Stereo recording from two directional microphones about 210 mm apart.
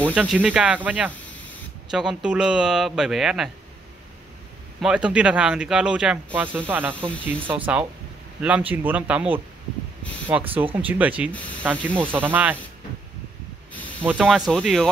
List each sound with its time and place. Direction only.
0.1 s speech: 5° right (ahead or behind)
4.8 s speech: 5° right (ahead or behind)
13.7 s spray: 5° left (ahead or behind)
14.0 s speech: centre (ahead or behind)